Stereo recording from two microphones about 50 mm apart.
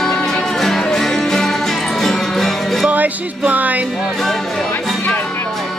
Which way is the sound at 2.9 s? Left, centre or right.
Right.